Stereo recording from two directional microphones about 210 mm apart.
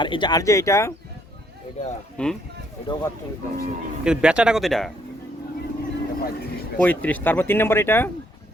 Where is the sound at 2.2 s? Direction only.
5° left (ahead or behind).